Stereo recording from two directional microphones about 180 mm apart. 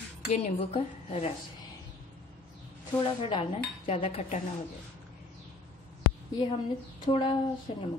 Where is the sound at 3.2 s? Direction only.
30° left (ahead or behind).